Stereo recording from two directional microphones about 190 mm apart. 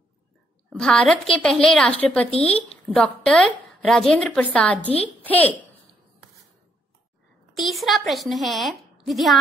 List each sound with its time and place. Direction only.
0.7 s a woman's voice: 5° left (ahead or behind)
7.5 s a woman's voice: centre (ahead or behind)